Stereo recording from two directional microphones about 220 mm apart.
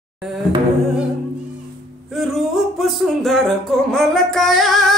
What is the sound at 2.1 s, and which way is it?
Music, centre (ahead or behind).